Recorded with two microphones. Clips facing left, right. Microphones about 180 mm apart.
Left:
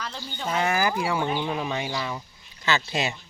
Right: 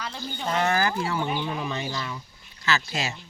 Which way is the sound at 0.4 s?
10° left (ahead or behind).